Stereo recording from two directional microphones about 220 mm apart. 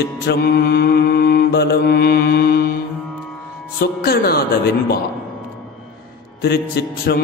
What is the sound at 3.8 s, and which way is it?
A woman's voice, 45° left (ahead or behind).